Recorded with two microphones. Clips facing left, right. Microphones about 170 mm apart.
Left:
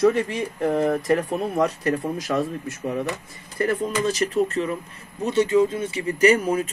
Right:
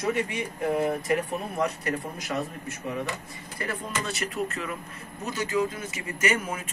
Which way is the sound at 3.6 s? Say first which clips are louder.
Left 11 dB; 45° left (ahead or behind).